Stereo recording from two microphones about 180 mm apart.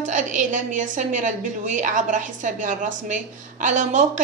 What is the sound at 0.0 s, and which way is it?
A woman's voice, 45° right (ahead or behind).